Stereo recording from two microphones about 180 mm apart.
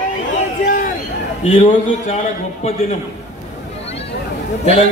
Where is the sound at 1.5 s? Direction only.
30° left (ahead or behind).